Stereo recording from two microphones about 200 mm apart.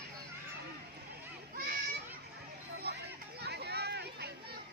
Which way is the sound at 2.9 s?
55° right (ahead or behind).